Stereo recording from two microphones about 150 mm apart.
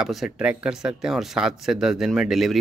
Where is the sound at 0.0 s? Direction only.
Centre (ahead or behind).